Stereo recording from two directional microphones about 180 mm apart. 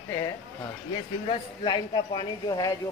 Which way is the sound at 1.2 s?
25° left (ahead or behind).